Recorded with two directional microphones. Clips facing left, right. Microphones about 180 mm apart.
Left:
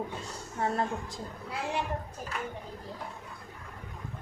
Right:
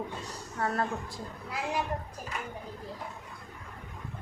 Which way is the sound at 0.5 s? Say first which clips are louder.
Left 1 dB; 25° left (ahead or behind).